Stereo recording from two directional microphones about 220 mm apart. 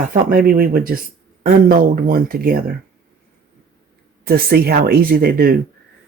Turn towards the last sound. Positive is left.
turn(degrees=-45)  # may be behind; listen again after turning